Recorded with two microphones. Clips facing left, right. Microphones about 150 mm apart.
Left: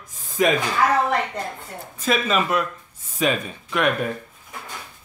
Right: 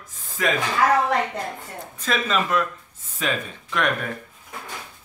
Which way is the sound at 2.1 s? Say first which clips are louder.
Left 2 dB; 10° left (ahead or behind).